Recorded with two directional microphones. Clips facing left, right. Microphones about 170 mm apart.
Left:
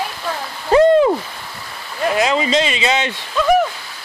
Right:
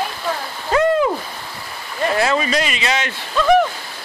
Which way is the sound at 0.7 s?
35° left (ahead or behind).